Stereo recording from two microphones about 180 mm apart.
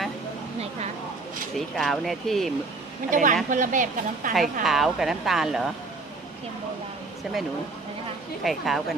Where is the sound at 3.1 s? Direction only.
45° right (ahead or behind).